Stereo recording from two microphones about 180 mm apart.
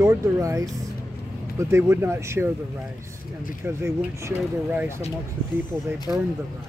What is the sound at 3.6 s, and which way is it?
Speech, 15° right (ahead or behind).